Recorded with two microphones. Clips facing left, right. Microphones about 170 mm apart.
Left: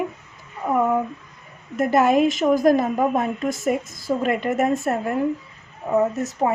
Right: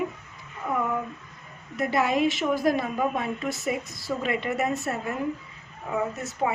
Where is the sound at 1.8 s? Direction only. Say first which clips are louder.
Left 7 dB; 50° left (ahead or behind).